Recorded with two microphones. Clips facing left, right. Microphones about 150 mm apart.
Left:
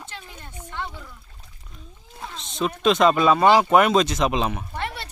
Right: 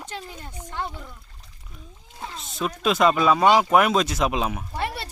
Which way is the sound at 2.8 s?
5° right (ahead or behind).